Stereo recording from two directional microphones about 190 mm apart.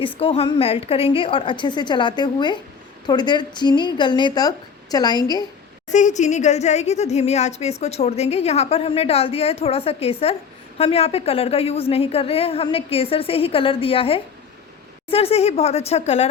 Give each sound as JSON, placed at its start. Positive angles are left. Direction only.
{"t": 0.2, "sound": "a woman's voice", "side_deg": 30}
{"t": 5.9, "sound": "a woman's voice", "side_deg": 40}